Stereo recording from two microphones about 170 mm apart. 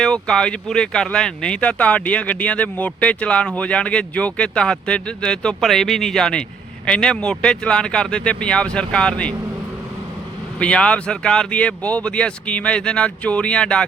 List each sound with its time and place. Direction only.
0.0 s speech: 5° left (ahead or behind)
10.6 s speech: 5° left (ahead or behind)